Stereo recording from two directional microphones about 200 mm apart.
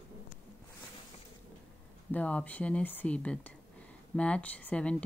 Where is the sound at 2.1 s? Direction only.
5° left (ahead or behind).